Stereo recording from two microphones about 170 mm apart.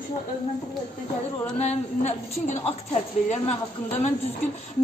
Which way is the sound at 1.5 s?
40° left (ahead or behind).